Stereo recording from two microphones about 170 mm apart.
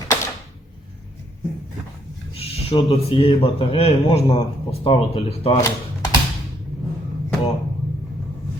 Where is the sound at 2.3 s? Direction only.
35° left (ahead or behind).